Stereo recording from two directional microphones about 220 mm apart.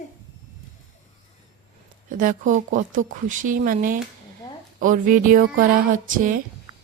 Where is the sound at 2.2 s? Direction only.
40° right (ahead or behind).